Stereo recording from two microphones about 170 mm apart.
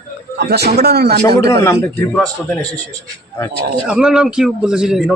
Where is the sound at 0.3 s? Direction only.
70° right (ahead or behind).